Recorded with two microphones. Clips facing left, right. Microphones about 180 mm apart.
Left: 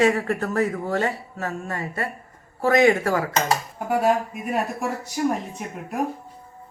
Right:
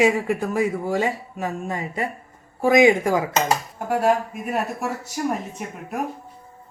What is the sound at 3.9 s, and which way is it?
Speech, centre (ahead or behind).